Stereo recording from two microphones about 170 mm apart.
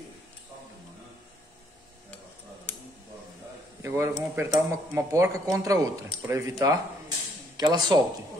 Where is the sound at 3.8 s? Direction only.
15° right (ahead or behind).